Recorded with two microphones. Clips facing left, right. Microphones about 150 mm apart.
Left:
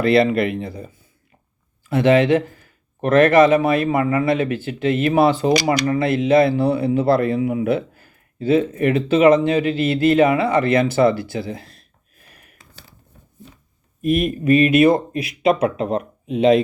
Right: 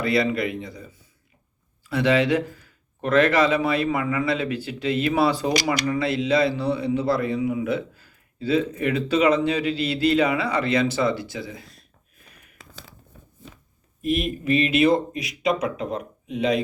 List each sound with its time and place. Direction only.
0.0 s speech: 60° left (ahead or behind)
1.9 s a man's voice: 45° left (ahead or behind)
14.0 s speech: 50° left (ahead or behind)